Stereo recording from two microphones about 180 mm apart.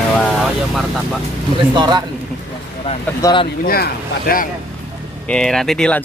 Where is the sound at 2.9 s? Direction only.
30° left (ahead or behind).